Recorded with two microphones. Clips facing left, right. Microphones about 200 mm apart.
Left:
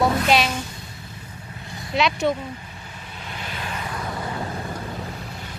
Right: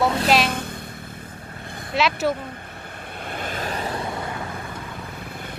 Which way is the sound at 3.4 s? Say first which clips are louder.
Right 4 dB; 45° right (ahead or behind).